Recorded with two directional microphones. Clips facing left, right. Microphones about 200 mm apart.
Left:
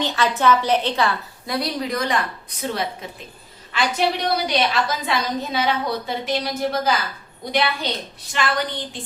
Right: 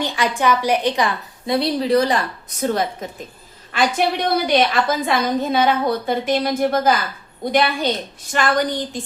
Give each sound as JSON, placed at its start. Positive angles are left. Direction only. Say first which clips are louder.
{"t": 0.0, "sound": "a woman's voice", "louder": "even", "side_deg": -15}
{"t": 1.5, "sound": "a woman's voice", "louder": "right 7 dB", "side_deg": -30}